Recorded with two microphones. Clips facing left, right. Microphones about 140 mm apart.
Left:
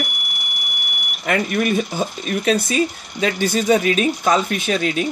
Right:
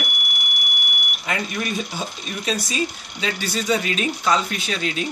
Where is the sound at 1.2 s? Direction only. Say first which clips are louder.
Left 7 dB; 55° left (ahead or behind).